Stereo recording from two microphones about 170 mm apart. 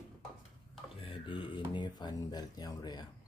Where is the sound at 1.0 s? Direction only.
30° left (ahead or behind).